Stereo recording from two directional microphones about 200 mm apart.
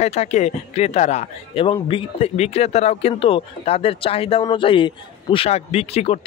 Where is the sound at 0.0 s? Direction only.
35° left (ahead or behind).